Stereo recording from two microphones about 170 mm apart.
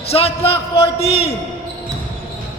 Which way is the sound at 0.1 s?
35° left (ahead or behind).